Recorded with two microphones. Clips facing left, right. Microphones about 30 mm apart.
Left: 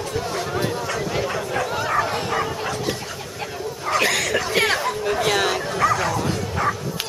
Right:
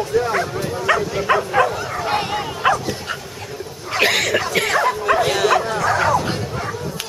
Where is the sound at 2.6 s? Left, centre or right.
Right.